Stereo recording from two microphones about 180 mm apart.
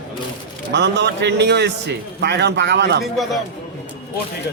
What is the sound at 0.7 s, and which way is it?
A man's voice, 75° right (ahead or behind).